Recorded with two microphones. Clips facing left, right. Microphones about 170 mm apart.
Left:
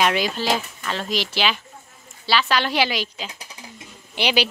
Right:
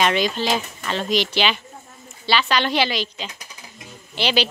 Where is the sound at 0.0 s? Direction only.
5° left (ahead or behind).